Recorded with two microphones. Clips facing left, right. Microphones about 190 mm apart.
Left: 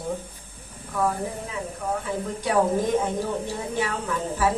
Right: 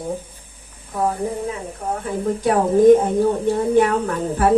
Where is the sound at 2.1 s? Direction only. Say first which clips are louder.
Right 11 dB; 50° right (ahead or behind).